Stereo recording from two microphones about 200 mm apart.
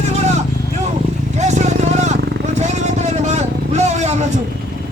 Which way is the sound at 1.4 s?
35° right (ahead or behind).